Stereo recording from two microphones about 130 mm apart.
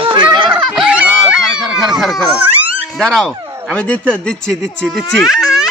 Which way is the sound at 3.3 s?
25° right (ahead or behind).